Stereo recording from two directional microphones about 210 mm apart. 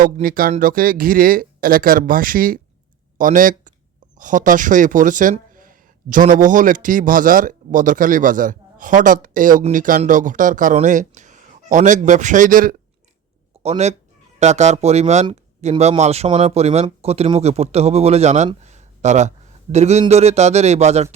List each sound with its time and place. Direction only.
0.0 s speech: 40° right (ahead or behind)